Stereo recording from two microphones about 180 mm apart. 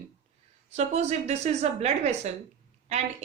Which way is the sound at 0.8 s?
40° right (ahead or behind).